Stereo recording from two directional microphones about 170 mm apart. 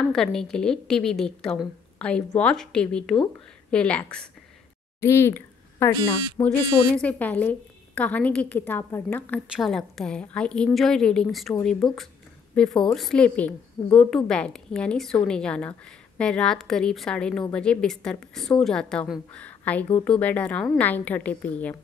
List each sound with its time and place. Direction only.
0.0 s a woman's voice: 5° left (ahead or behind)
5.0 s a sound: 15° left (ahead or behind)
5.9 s speech: 25° left (ahead or behind)
6.4 s a woman's voice: 10° left (ahead or behind)
9.5 s a woman's voice: centre (ahead or behind)